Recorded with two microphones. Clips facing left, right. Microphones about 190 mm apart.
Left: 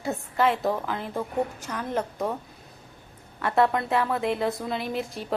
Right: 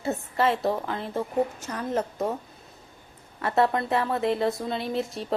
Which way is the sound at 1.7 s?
30° right (ahead or behind).